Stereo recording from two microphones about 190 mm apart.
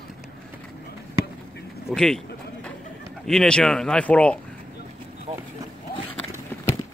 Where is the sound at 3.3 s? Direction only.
5° left (ahead or behind).